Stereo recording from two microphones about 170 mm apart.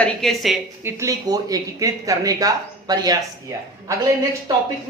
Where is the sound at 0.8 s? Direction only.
15° right (ahead or behind).